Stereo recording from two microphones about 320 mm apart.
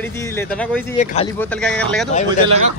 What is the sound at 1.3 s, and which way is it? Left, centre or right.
Speech, centre.